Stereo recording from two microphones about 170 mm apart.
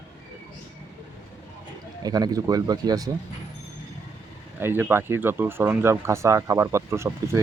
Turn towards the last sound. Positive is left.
turn(degrees=-15)  # may be behind; listen again after turning